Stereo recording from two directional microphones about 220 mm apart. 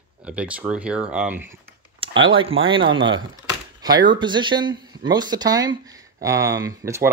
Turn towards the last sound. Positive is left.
turn(degrees=-15)  # may be behind; listen again after turning